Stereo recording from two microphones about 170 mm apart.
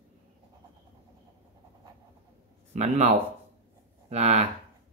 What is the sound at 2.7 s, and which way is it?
Speech, 45° right (ahead or behind).